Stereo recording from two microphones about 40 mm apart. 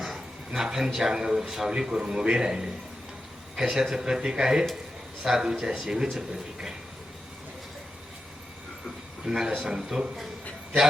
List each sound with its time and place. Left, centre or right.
0.5 s a man's voice: centre
9.2 s a man's voice: centre